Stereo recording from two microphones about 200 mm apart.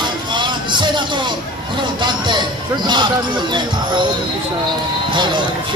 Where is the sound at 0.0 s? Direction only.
25° right (ahead or behind).